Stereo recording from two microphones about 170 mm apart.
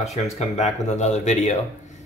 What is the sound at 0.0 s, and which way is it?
Speech, 40° left (ahead or behind).